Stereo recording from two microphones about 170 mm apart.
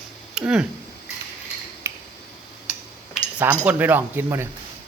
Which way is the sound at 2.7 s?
10° right (ahead or behind).